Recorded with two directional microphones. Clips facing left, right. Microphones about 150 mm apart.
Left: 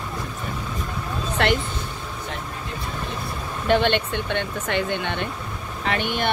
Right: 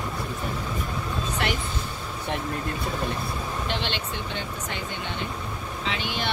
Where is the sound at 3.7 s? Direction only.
55° left (ahead or behind).